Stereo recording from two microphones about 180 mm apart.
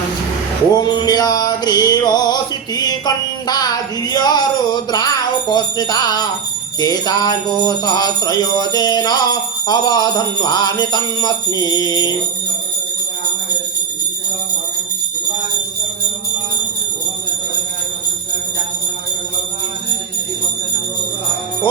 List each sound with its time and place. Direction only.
0.7 s jingle bell: 20° left (ahead or behind)